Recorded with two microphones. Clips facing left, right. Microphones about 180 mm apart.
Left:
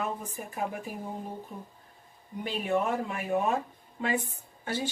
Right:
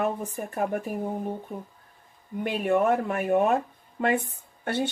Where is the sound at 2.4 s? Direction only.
55° right (ahead or behind).